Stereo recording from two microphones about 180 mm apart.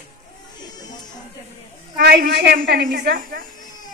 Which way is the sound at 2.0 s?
65° right (ahead or behind).